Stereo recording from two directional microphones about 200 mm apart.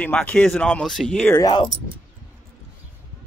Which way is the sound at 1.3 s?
20° left (ahead or behind).